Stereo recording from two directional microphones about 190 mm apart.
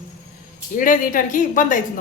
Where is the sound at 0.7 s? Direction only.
45° left (ahead or behind).